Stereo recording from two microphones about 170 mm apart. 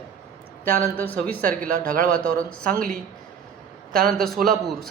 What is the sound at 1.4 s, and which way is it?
A man's voice, 55° right (ahead or behind).